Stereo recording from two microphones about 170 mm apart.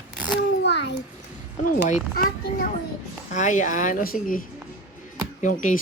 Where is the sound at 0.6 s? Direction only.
90° left.